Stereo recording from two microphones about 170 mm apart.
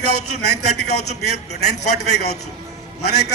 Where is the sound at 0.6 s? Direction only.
70° left (ahead or behind).